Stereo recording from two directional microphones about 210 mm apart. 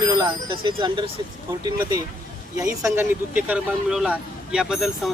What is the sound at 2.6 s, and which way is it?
Speech, 15° right (ahead or behind).